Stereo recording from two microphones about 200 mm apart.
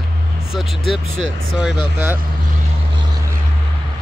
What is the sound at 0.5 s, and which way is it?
Speech, centre (ahead or behind).